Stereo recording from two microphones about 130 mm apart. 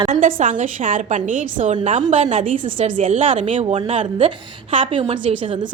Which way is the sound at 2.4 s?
80° right.